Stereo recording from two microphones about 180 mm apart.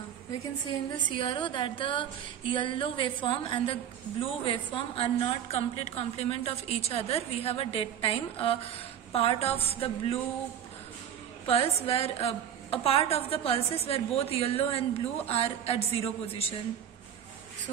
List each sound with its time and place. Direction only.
0.7 s a woman's voice: 25° left (ahead or behind)
11.4 s a woman's voice: 35° left (ahead or behind)